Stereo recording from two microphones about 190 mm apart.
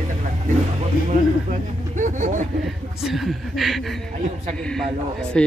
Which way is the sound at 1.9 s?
40° right (ahead or behind).